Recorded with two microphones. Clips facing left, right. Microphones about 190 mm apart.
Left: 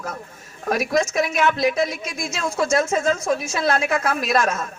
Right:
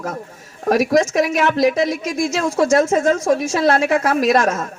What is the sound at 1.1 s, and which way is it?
A woman's voice, 85° right.